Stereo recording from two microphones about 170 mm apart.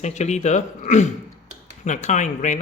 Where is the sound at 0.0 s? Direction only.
45° left (ahead or behind).